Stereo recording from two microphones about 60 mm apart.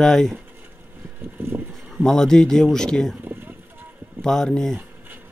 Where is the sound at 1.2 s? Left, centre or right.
Right.